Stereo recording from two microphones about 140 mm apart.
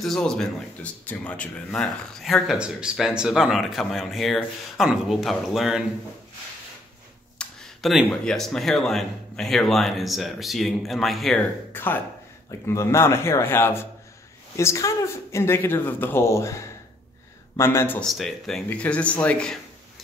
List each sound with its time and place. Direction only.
0.0 s a man's voice: 5° left (ahead or behind)
7.3 s a sound: centre (ahead or behind)
8.1 s a man's voice: 5° left (ahead or behind)
11.7 s speech: 15° left (ahead or behind)
18.0 s a man's voice: centre (ahead or behind)